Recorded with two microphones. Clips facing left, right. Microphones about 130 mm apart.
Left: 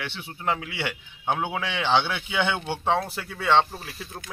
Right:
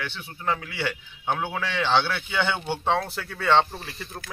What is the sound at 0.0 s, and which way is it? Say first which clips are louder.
A man's voice: left 1 dB; 25° left (ahead or behind).